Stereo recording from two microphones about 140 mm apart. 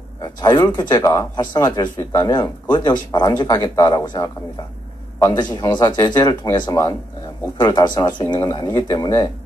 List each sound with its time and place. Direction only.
0.2 s speech: 30° left (ahead or behind)